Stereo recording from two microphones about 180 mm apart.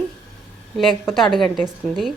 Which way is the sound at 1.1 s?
Centre (ahead or behind).